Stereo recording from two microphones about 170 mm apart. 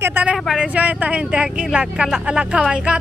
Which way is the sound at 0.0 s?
10° right (ahead or behind).